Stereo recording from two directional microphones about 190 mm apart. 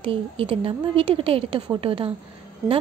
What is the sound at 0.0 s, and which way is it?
A woman's voice, 30° right (ahead or behind).